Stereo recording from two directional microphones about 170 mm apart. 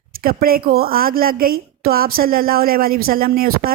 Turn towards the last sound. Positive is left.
turn(degrees=-60)  # may be behind; listen again after turning